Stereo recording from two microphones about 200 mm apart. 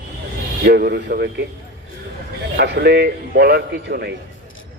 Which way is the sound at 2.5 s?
55° right (ahead or behind).